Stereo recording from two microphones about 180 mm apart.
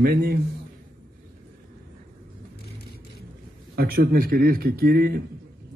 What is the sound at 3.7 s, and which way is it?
A man's voice, 55° right (ahead or behind).